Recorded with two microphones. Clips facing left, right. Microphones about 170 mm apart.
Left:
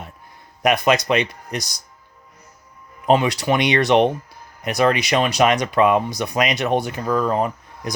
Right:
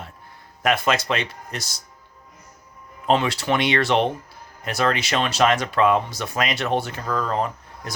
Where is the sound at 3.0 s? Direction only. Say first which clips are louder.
Left 3 dB; 15° left (ahead or behind).